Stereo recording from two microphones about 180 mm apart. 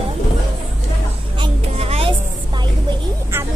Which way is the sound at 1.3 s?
30° right (ahead or behind).